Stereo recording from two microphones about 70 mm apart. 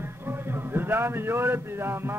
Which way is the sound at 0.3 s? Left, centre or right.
Right.